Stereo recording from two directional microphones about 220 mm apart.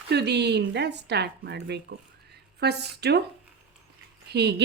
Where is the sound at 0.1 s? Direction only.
50° right (ahead or behind).